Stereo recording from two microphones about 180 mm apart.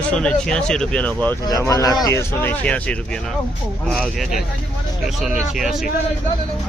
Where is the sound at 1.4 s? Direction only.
20° left (ahead or behind).